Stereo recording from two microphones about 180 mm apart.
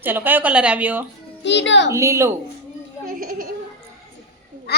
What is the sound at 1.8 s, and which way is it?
Speech, 15° right (ahead or behind).